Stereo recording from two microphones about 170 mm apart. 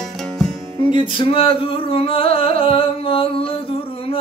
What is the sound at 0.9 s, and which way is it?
Music, 30° left (ahead or behind).